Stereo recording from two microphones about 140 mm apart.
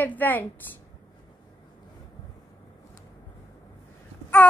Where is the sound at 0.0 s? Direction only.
10° left (ahead or behind).